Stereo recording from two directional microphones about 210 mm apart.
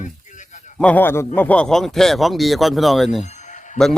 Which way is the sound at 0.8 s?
10° left (ahead or behind).